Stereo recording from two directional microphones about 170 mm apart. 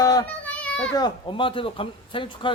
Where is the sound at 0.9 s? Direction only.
25° left (ahead or behind).